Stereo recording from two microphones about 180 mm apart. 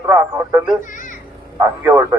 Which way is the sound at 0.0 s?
15° right (ahead or behind).